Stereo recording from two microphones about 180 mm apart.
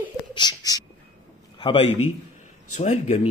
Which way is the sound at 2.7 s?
40° left (ahead or behind).